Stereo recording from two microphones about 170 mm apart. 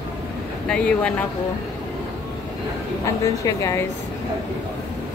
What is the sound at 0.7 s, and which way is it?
Speech, 5° left (ahead or behind).